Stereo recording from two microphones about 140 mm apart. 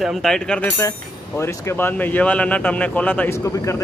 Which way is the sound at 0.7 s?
20° left (ahead or behind).